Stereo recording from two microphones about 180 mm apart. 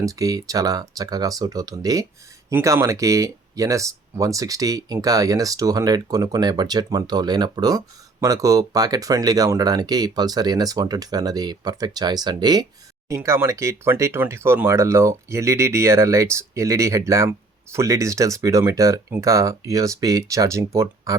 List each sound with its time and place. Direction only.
0.0 s speech: 20° right (ahead or behind)